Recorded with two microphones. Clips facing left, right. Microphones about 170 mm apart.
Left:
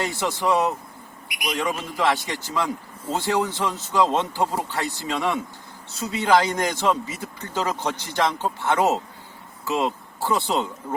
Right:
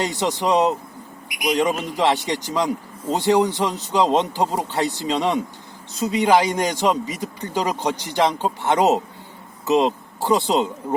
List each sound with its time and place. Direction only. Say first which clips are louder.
0.0 s a man's voice: right 3 dB; 20° right (ahead or behind)